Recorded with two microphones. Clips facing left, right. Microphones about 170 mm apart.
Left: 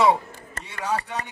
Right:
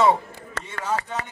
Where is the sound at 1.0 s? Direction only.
90° right.